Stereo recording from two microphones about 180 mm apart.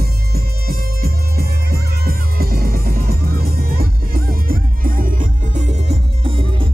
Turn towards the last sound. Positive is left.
turn(degrees=-30)  # may be behind; listen again after turning